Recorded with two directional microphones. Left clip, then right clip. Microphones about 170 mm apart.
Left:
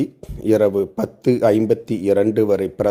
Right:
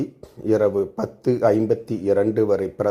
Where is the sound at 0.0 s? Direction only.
25° left (ahead or behind).